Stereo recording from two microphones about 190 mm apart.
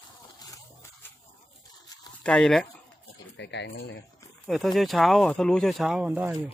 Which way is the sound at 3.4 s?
65° left (ahead or behind).